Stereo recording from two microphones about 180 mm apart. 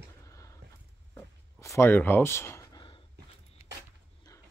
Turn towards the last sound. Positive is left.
turn(degrees=20)  # may be behind; listen again after turning